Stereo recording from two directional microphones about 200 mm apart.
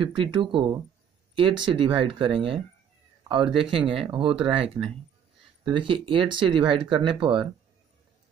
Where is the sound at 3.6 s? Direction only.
25° right (ahead or behind).